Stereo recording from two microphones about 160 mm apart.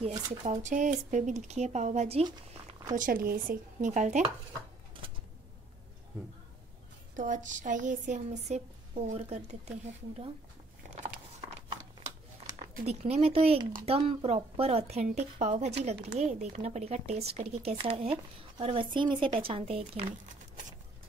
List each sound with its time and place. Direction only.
0.0 s speech: 40° right (ahead or behind)
3.0 s speech: 65° right (ahead or behind); by 4.3 s 50° right (ahead or behind)
7.2 s speech: 50° right (ahead or behind)
11.0 s biting: 50° right (ahead or behind)
12.8 s a woman's voice: 40° right (ahead or behind)